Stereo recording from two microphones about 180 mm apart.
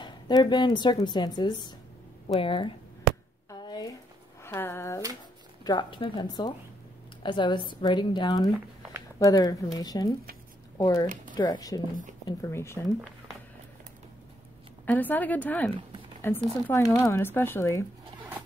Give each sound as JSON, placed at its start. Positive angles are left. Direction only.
{"t": 0.0, "sound": "speech", "side_deg": 25}
{"t": 3.4, "sound": "a sound", "side_deg": 25}
{"t": 5.6, "sound": "speech", "side_deg": 25}
{"t": 14.9, "sound": "speech", "side_deg": 10}